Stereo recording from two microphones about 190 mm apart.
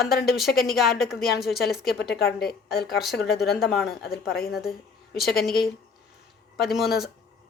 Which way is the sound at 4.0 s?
55° left (ahead or behind).